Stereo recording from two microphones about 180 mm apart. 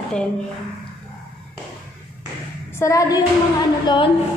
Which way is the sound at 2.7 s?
15° left (ahead or behind).